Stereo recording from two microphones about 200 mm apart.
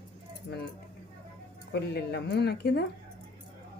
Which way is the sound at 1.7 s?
55° left (ahead or behind).